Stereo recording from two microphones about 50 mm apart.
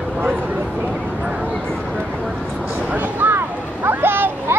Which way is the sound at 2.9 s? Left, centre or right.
Right.